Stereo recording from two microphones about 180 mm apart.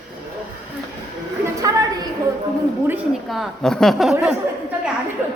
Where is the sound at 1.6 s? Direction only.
20° right (ahead or behind).